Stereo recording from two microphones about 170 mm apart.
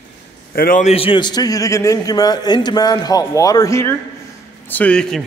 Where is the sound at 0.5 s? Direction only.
55° left (ahead or behind).